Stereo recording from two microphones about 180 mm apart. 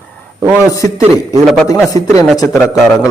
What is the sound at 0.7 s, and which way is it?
A man's voice, 20° left (ahead or behind).